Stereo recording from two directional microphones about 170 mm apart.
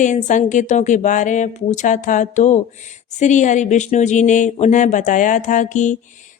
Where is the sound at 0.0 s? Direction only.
45° left (ahead or behind).